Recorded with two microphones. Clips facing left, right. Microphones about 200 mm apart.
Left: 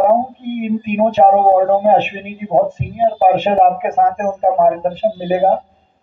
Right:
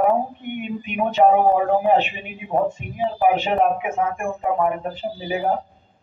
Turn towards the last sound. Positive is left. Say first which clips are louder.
# left 10 dB
turn(degrees=55)  # may be behind; listen again after turning